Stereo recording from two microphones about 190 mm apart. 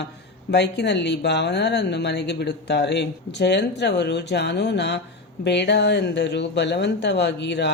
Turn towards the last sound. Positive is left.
turn(degrees=65)  # may be behind; listen again after turning